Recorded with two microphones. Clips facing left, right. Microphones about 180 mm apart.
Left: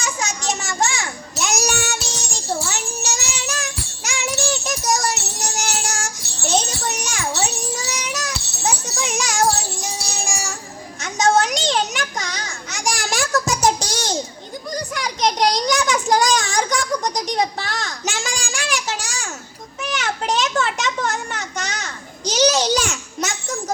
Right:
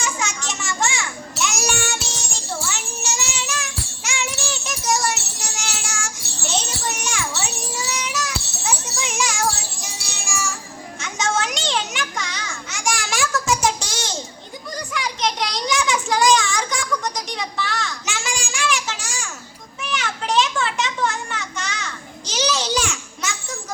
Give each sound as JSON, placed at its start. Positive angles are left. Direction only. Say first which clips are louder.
{"t": 0.0, "sound": "child singing", "louder": "left 2 dB", "side_deg": 40}
{"t": 11.0, "sound": "children playing", "louder": "left 6 dB", "side_deg": 40}
{"t": 14.9, "sound": "child singing", "louder": "left 3 dB", "side_deg": 40}
{"t": 19.8, "sound": "a sound", "louder": "left 3 dB", "side_deg": 40}